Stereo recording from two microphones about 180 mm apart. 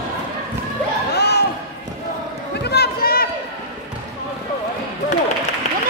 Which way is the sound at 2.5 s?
65° left (ahead or behind).